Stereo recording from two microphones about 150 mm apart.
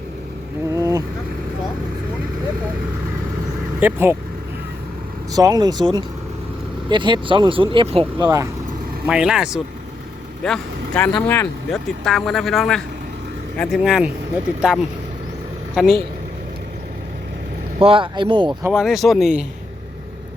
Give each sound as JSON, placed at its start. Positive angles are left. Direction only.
{"t": 0.7, "sound": "a sound", "side_deg": -20}
{"t": 3.8, "sound": "speech", "side_deg": -15}
{"t": 5.3, "sound": "speech", "side_deg": -25}
{"t": 9.0, "sound": "speech", "side_deg": -5}
{"t": 10.4, "sound": "speech", "side_deg": 10}
{"t": 11.7, "sound": "speech", "side_deg": 0}
{"t": 15.7, "sound": "speech", "side_deg": 0}
{"t": 17.7, "sound": "speech", "side_deg": -40}
{"t": 18.7, "sound": "speech", "side_deg": -5}